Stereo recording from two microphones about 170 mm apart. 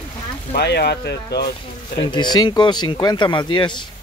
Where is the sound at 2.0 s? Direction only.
30° left (ahead or behind).